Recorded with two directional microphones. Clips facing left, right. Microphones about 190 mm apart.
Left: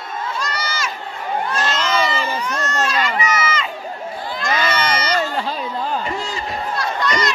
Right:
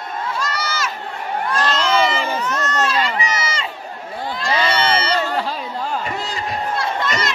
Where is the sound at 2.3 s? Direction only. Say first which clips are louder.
Right 1 dB; 10° left (ahead or behind).